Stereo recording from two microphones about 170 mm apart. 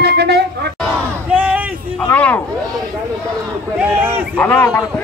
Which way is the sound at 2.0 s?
5° left (ahead or behind).